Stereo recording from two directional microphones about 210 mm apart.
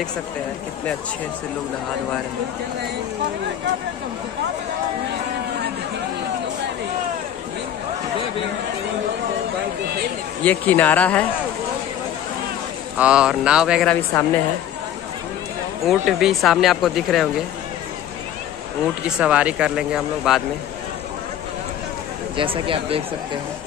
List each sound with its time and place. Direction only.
10.4 s speech: 10° left (ahead or behind)
12.9 s speech: 5° right (ahead or behind)
14.1 s speech: 10° left (ahead or behind)
15.9 s speech: centre (ahead or behind)
19.0 s speech: 5° right (ahead or behind)
22.4 s speech: 25° right (ahead or behind)